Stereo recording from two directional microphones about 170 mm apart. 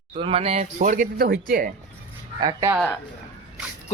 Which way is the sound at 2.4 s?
20° right (ahead or behind).